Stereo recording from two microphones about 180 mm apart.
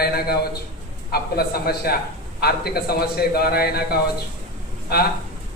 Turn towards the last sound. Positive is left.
turn(degrees=60)  # may be behind; listen again after turning